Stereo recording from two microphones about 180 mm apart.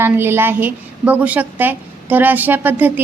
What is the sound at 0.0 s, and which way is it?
A woman's voice, 15° right (ahead or behind).